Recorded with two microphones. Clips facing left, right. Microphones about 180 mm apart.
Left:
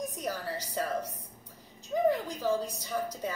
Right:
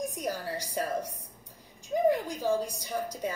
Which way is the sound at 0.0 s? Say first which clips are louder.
Right 2 dB; 10° right (ahead or behind).